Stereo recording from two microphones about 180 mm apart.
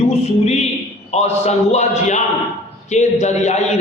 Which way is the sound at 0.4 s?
35° left (ahead or behind).